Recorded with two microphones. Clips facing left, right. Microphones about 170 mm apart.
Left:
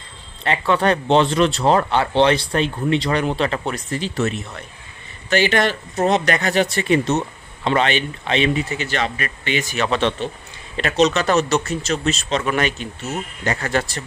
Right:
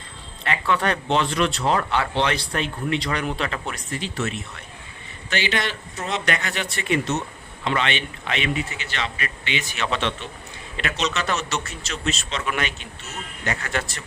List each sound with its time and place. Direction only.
0.4 s a man's voice: 30° left (ahead or behind)